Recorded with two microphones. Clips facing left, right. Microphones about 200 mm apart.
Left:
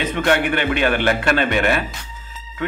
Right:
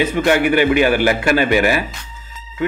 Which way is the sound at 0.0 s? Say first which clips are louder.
Right 4 dB; 10° right (ahead or behind).